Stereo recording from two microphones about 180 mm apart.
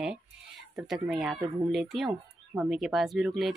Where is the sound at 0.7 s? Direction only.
Centre (ahead or behind).